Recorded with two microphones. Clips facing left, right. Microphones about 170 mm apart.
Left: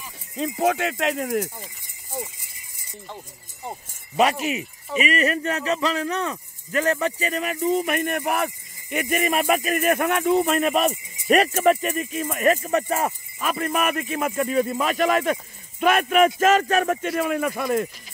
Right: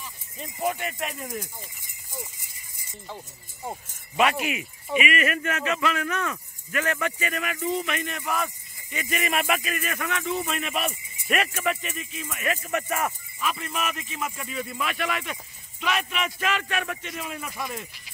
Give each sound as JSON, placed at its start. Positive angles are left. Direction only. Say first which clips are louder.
{"t": 0.4, "sound": "speech", "louder": "left 7 dB", "side_deg": 85}
{"t": 4.2, "sound": "speech", "louder": "left 3 dB", "side_deg": 35}
{"t": 8.9, "sound": "speech", "louder": "left 5 dB", "side_deg": 50}
{"t": 10.7, "sound": "speech", "louder": "left 8 dB", "side_deg": 40}
{"t": 13.4, "sound": "speech", "louder": "left 6 dB", "side_deg": 50}
{"t": 17.1, "sound": "speech", "louder": "left 12 dB", "side_deg": 60}